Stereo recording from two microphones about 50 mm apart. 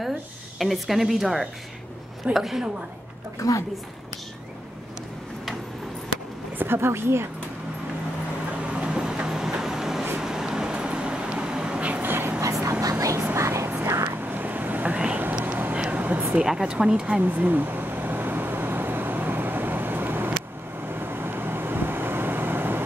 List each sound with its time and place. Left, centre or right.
0.6 s speech: centre
3.4 s speech: left
6.6 s speech: right
8.6 s vehicle: centre
12.0 s vehicle: right
12.4 s vehicle: right
13.0 s vehicle: right
14.0 s vehicle: right
15.4 s vehicle: right
15.7 s a sound: right
16.4 s a woman's voice: centre
17.2 s vehicle: right